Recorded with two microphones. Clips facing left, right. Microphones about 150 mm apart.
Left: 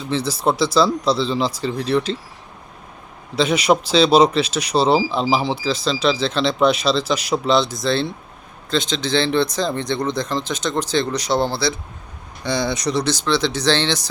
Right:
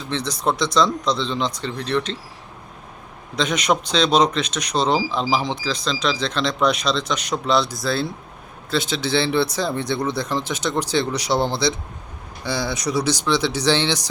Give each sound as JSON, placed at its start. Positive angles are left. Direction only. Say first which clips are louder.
{"t": 0.1, "sound": "speech", "louder": "left 3 dB", "side_deg": 5}
{"t": 3.3, "sound": "speech", "louder": "left 4 dB", "side_deg": 5}
{"t": 12.5, "sound": "speech", "louder": "left 3 dB", "side_deg": -5}